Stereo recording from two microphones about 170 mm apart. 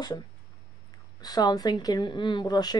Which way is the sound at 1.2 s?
25° left (ahead or behind).